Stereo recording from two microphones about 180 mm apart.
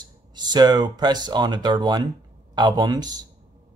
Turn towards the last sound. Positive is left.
turn(degrees=-20)  # may be behind; listen again after turning